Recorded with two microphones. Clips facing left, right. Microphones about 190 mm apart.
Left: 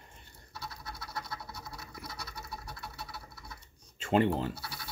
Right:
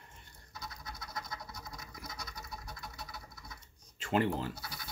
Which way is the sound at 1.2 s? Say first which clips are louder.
Left 2 dB; 30° left (ahead or behind).